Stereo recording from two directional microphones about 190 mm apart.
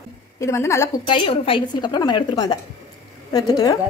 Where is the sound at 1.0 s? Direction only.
25° left (ahead or behind).